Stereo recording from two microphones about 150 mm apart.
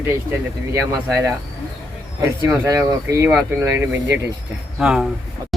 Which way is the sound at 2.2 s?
20° right (ahead or behind).